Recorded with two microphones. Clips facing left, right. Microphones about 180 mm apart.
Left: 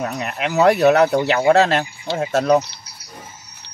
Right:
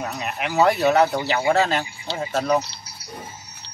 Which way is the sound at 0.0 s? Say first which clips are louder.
Left 4 dB; 60° left (ahead or behind).